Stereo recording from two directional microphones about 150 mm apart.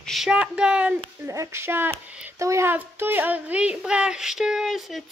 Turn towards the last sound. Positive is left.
turn(degrees=0)  # may be behind; listen again after turning